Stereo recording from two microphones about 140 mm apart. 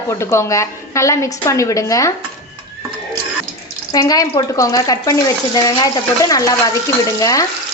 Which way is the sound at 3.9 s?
25° left (ahead or behind).